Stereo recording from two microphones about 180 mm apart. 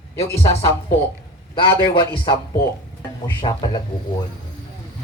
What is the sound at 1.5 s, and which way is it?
Speech, 30° left (ahead or behind).